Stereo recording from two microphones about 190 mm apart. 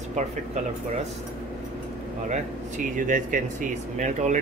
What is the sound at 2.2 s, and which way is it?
Speech, 40° right (ahead or behind).